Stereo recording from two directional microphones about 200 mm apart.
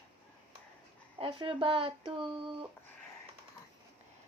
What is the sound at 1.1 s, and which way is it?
Speech, 25° right (ahead or behind).